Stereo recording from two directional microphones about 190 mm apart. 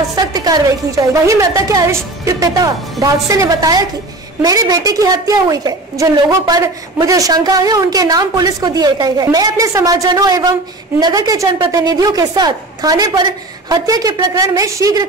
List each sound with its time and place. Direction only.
0.1 s a woman's voice: 20° right (ahead or behind)